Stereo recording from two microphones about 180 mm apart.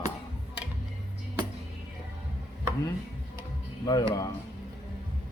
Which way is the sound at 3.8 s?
20° left (ahead or behind).